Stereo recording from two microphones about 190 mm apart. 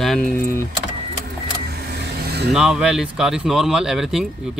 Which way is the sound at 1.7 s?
60° right (ahead or behind).